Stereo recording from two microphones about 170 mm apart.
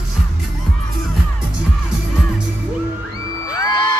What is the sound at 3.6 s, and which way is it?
Music, 20° left (ahead or behind).